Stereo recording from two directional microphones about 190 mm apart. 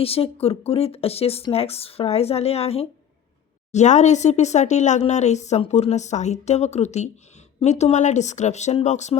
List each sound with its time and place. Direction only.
0.0 s speech: 30° left (ahead or behind)